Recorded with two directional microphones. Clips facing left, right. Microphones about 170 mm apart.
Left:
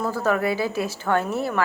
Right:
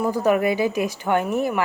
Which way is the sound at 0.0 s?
15° right (ahead or behind).